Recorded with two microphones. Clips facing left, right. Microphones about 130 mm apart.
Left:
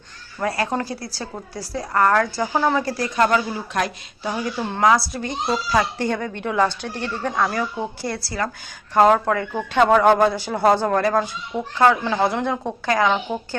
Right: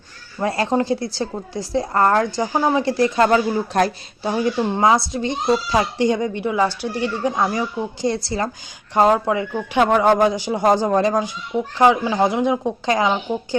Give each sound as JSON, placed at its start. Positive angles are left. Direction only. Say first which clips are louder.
{"t": 0.3, "sound": "a woman's voice", "louder": "right 4 dB", "side_deg": -25}
{"t": 9.0, "sound": "a man's voice", "louder": "even", "side_deg": -10}